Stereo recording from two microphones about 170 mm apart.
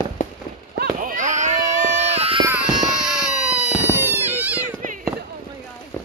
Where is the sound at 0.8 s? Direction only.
55° right (ahead or behind); by 2.4 s 35° right (ahead or behind).